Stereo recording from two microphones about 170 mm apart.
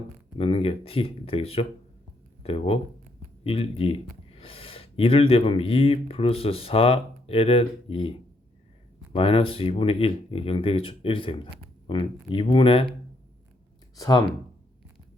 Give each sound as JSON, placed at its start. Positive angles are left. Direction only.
{"t": 0.3, "sound": "speech", "side_deg": 35}
{"t": 9.1, "sound": "speech", "side_deg": 35}
{"t": 13.9, "sound": "speech", "side_deg": 20}